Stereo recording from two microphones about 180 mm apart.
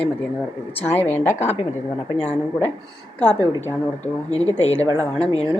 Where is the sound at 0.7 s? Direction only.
10° left (ahead or behind).